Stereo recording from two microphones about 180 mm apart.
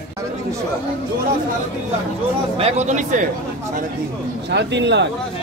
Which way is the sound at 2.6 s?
40° right (ahead or behind).